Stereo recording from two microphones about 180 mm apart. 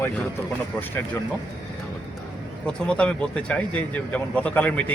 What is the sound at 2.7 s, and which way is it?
Speech, 5° left (ahead or behind).